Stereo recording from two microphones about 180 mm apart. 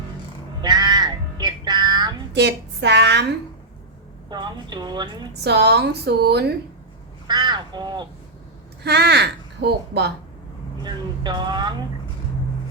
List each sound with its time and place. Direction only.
0.6 s music: 25° right (ahead or behind)
2.3 s a woman's voice: 70° right (ahead or behind)
4.3 s speech: 25° right (ahead or behind)
5.3 s speech: 65° right (ahead or behind)
7.3 s speech: 25° right (ahead or behind)
8.8 s speech: 65° right (ahead or behind)
10.8 s speech: 25° right (ahead or behind)